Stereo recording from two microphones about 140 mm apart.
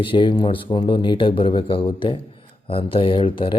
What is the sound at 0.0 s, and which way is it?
A man's voice, 35° left (ahead or behind).